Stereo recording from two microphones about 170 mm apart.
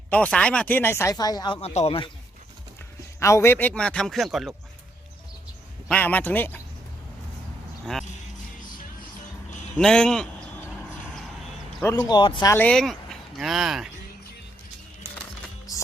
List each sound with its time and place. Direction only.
0.1 s speech: 5° left (ahead or behind); by 1.5 s 25° left (ahead or behind)
1.6 s speech: 35° left (ahead or behind)
3.2 s a man's voice: 15° left (ahead or behind); by 4.5 s centre (ahead or behind)
5.9 s speech: 10° left (ahead or behind)
9.7 s a man's voice: 5° left (ahead or behind)
11.8 s a man's voice: 20° left (ahead or behind)
12.5 s speech: 10° left (ahead or behind)